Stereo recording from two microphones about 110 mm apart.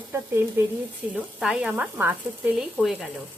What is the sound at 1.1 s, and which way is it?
Speech, 5° right (ahead or behind).